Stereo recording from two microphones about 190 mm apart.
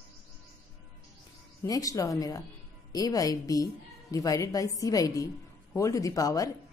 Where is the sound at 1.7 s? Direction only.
20° left (ahead or behind).